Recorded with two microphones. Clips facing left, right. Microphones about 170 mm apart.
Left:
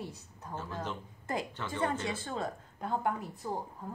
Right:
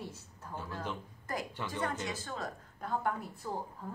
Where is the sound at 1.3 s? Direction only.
25° left (ahead or behind).